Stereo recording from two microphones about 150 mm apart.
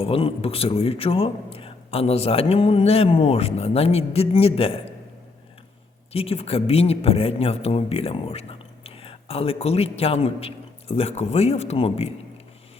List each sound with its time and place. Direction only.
0.0 s speech: 40° left (ahead or behind)
6.1 s speech: 40° left (ahead or behind)